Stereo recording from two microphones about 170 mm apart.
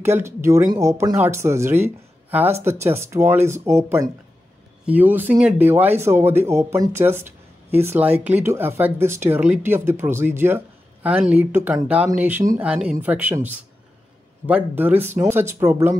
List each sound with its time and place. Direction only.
0.0 s speech: 15° right (ahead or behind)